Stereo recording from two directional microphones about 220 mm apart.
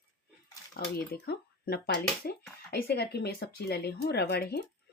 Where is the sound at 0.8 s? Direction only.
45° left (ahead or behind).